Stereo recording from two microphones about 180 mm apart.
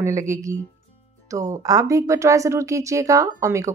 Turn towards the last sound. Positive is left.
turn(degrees=-15)  # may be behind; listen again after turning